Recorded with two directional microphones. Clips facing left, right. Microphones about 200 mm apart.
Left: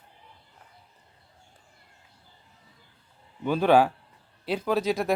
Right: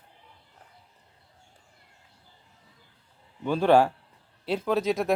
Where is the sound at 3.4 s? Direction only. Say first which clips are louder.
Even; 5° left (ahead or behind).